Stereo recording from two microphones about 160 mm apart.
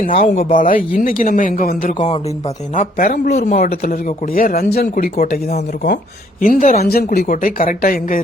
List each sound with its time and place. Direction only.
0.1 s speech: 40° left (ahead or behind)
0.9 s speech: 60° left (ahead or behind); by 3.6 s 45° left (ahead or behind)
4.4 s speech: 70° left (ahead or behind)